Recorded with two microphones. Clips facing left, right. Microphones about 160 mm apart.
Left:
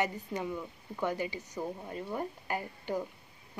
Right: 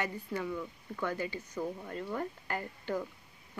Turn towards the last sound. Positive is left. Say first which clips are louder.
# left 1 dB
turn(degrees=15)  # may be behind; listen again after turning